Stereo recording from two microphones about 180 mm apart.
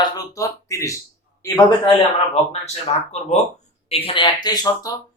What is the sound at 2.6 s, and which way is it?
Speech, 40° left (ahead or behind).